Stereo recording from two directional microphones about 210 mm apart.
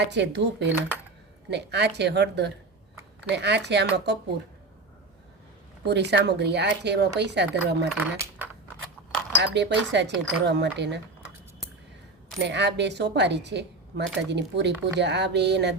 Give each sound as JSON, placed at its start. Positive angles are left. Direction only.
{"t": 0.0, "sound": "speech", "side_deg": -55}
{"t": 5.8, "sound": "speech", "side_deg": -55}
{"t": 8.1, "sound": "speech", "side_deg": -15}
{"t": 9.4, "sound": "speech", "side_deg": -55}
{"t": 12.4, "sound": "speech", "side_deg": -55}